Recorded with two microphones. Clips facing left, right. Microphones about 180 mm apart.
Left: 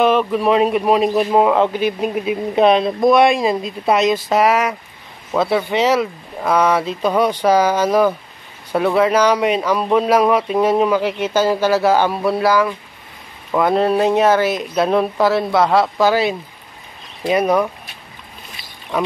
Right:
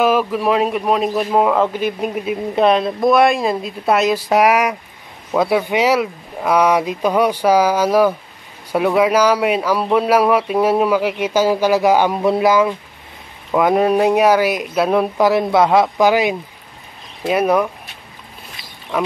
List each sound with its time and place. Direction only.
0.0 s a man's voice: 5° right (ahead or behind)
15.1 s a man's voice: 15° right (ahead or behind)